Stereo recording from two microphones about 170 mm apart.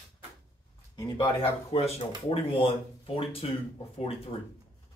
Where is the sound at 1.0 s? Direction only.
30° left (ahead or behind).